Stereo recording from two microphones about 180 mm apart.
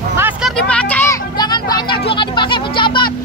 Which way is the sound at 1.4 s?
25° left (ahead or behind).